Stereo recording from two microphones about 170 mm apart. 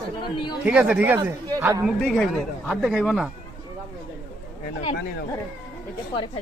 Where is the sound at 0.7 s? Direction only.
5° right (ahead or behind).